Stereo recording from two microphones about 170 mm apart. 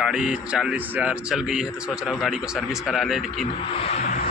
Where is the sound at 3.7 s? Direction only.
35° left (ahead or behind).